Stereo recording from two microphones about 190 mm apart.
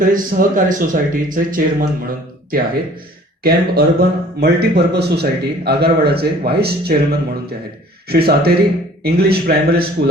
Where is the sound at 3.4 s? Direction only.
55° right (ahead or behind).